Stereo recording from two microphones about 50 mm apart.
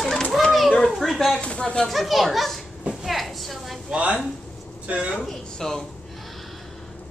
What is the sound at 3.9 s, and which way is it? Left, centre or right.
A woman's voice, right.